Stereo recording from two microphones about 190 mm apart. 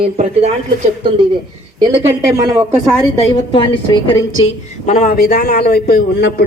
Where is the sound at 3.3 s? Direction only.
25° left (ahead or behind).